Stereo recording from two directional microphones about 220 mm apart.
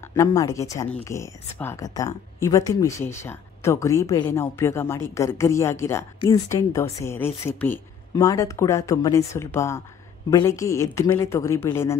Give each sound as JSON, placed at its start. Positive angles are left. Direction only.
{"t": 0.1, "sound": "speech", "side_deg": 15}